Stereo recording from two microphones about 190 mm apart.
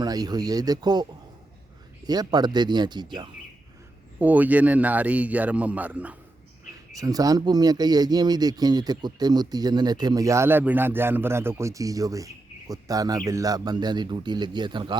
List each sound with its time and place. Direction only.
0.0 s speech: 20° right (ahead or behind)
2.0 s speech: 20° right (ahead or behind)
4.2 s speech: 10° right (ahead or behind)
6.9 s speech: 20° right (ahead or behind)